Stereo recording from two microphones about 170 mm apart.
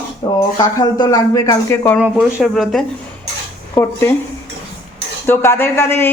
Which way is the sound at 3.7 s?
15° left (ahead or behind).